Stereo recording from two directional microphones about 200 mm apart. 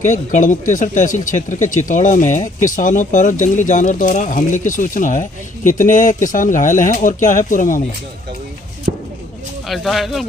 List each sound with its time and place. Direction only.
0.0 s speech: 40° left (ahead or behind)
8.9 s a sound: 40° right (ahead or behind)
9.7 s speech: centre (ahead or behind)